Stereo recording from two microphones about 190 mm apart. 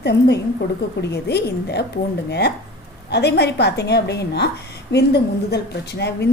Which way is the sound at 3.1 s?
60° left (ahead or behind).